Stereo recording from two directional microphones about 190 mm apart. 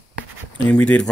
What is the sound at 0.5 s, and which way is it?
Speech, 5° left (ahead or behind).